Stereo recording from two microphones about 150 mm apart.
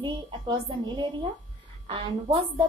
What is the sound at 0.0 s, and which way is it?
A woman's voice, 30° right (ahead or behind).